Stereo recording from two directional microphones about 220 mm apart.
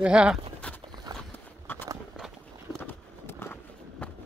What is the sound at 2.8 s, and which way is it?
Run, 10° left (ahead or behind).